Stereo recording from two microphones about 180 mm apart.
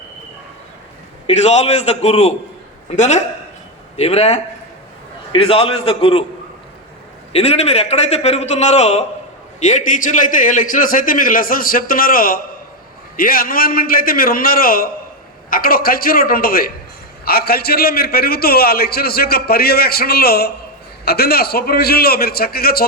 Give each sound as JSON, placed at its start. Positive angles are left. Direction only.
{"t": 1.3, "sound": "a man's voice", "side_deg": 40}
{"t": 7.3, "sound": "a man's voice", "side_deg": 35}